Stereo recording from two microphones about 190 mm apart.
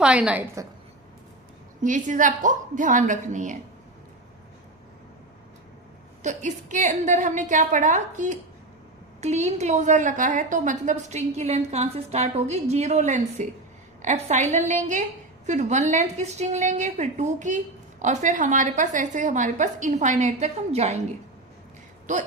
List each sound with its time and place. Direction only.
0.0 s a woman's voice: 5° right (ahead or behind)
1.8 s a woman's voice: 40° right (ahead or behind)
6.2 s a woman's voice: 40° right (ahead or behind)
22.1 s a woman's voice: 40° right (ahead or behind)